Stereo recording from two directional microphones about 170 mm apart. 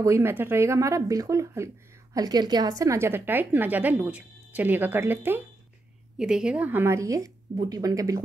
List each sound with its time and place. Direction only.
0.0 s a woman's voice: 15° right (ahead or behind)